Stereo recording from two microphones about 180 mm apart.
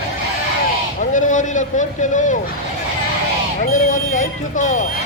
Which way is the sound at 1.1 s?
45° left (ahead or behind).